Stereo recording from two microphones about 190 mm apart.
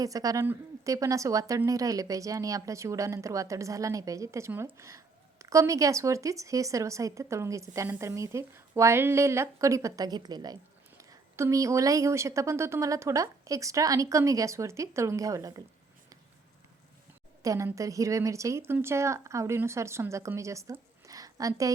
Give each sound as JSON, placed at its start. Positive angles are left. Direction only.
{"t": 0.0, "sound": "a woman's voice", "side_deg": -20}
{"t": 17.4, "sound": "a woman's voice", "side_deg": -15}